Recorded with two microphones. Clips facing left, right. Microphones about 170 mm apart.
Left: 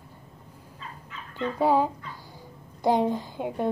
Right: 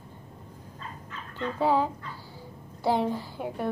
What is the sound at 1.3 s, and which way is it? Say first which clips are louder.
Speech: left 2 dB; 15° left (ahead or behind).